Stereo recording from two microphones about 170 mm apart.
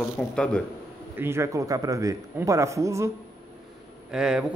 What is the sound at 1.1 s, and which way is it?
A man's voice, 15° right (ahead or behind).